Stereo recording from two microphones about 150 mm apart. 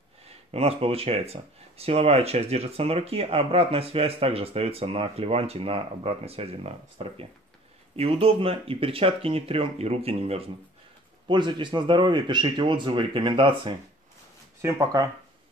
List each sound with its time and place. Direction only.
0.5 s speech: 40° right (ahead or behind)
14.6 s speech: 20° right (ahead or behind)